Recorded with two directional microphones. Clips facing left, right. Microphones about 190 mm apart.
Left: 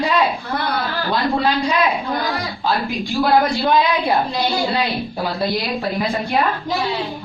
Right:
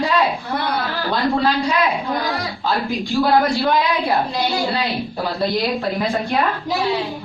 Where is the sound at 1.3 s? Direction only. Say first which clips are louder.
Even; 15° left (ahead or behind).